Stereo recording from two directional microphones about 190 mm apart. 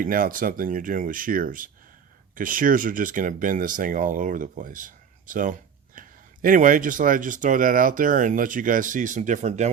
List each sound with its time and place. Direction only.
0.0 s speech: 45° right (ahead or behind)